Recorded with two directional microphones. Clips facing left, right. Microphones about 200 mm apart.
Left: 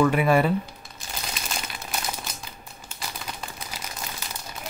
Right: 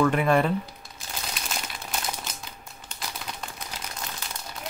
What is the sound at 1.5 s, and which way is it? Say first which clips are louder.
Crumpling: even; centre (ahead or behind).